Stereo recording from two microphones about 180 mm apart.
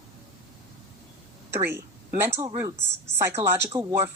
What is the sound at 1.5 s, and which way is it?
Speech, 15° right (ahead or behind).